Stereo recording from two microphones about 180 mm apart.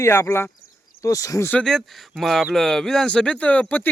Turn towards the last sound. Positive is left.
turn(degrees=10)  # may be behind; listen again after turning